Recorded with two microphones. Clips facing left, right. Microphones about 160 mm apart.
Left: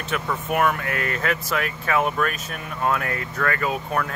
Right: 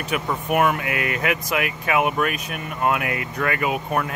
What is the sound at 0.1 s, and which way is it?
Speech, 15° right (ahead or behind).